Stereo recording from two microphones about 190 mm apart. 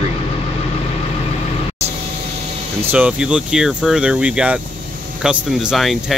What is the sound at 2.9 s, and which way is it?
Speech, 5° right (ahead or behind).